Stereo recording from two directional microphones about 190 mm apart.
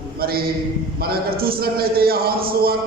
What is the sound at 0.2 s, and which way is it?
A man's voice, 55° right (ahead or behind).